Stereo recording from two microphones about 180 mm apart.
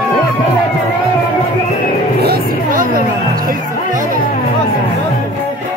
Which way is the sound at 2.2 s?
55° right (ahead or behind).